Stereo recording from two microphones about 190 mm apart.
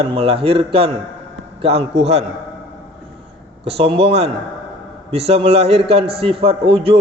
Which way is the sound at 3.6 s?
30° right (ahead or behind).